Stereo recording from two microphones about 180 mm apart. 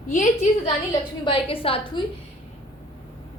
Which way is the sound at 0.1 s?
40° left (ahead or behind).